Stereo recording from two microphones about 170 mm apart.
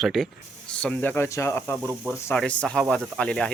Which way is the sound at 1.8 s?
10° right (ahead or behind).